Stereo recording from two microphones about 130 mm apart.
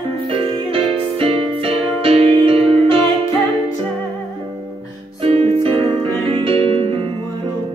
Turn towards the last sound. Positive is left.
turn(degrees=-40)  # may be behind; listen again after turning